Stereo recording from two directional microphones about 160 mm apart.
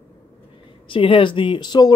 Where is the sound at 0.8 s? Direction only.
35° left (ahead or behind).